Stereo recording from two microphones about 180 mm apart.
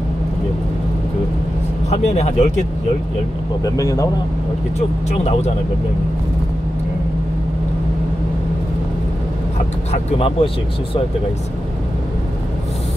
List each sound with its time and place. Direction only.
1.9 s speech: 40° left (ahead or behind)
3.6 s speech: 20° left (ahead or behind)
5.1 s speech: 35° left (ahead or behind)
9.9 s speech: 30° left (ahead or behind)